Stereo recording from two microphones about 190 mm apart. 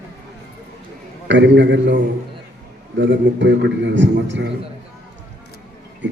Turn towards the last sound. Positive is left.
turn(degrees=-70)  # may be behind; listen again after turning